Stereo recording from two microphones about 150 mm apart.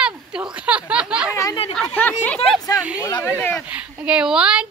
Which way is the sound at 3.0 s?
25° left (ahead or behind).